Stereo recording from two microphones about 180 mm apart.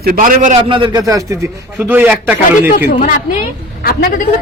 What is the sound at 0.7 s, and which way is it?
A man's voice, 25° right (ahead or behind).